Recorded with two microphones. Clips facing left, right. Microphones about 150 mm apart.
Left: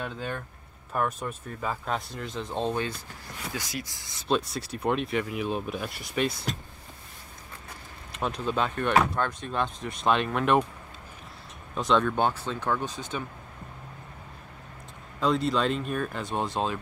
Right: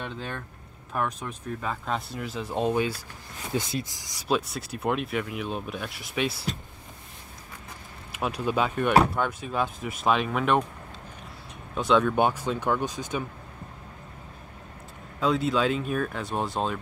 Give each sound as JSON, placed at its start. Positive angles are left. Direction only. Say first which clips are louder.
{"t": 0.0, "sound": "speech", "louder": "left 1 dB", "side_deg": 5}
{"t": 3.5, "sound": "speech", "louder": "right 9 dB", "side_deg": -20}
{"t": 4.6, "sound": "speech", "louder": "even", "side_deg": -5}
{"t": 8.1, "sound": "speech", "louder": "right 2 dB", "side_deg": -10}
{"t": 11.7, "sound": "speech", "louder": "right 2 dB", "side_deg": -5}
{"t": 15.1, "sound": "speech", "louder": "right 1 dB", "side_deg": 0}